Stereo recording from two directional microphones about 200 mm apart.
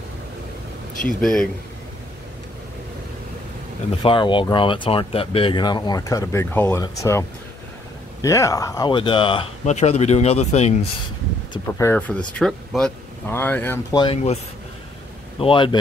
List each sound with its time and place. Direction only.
1.2 s speech: 5° left (ahead or behind)
4.0 s speech: 25° left (ahead or behind)
11.5 s speech: 10° left (ahead or behind)
13.9 s speech: 30° left (ahead or behind)